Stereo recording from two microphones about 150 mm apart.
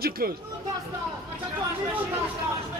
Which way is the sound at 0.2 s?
85° right.